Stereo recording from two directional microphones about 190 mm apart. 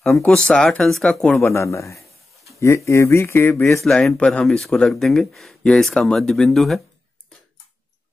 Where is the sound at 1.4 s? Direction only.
15° left (ahead or behind).